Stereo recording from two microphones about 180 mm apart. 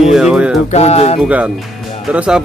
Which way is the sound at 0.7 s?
35° left (ahead or behind).